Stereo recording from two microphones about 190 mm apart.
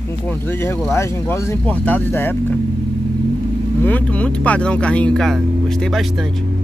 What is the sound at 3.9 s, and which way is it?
Speech, 10° left (ahead or behind).